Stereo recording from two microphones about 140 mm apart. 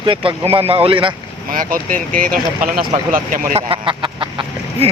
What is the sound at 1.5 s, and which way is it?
Speech, 75° right (ahead or behind).